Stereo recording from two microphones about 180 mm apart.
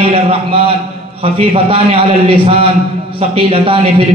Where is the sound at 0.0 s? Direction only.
30° right (ahead or behind).